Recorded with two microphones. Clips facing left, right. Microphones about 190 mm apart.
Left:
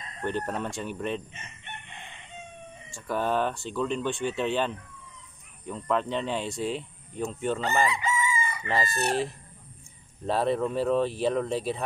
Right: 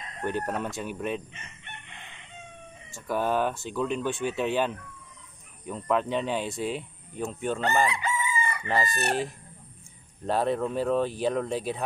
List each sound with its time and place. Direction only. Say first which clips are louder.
0.2 s speech: right 1 dB; 10° right (ahead or behind)
3.1 s speech: right 1 dB; 5° right (ahead or behind)
7.8 s chicken: left 1 dB; 65° right (ahead or behind)
8.6 s speech: even; centre (ahead or behind)
10.2 s speech: even; centre (ahead or behind)